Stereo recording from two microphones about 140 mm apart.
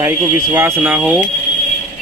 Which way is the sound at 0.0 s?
20° right (ahead or behind).